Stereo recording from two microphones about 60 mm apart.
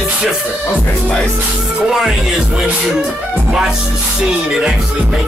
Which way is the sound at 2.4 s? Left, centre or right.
Centre.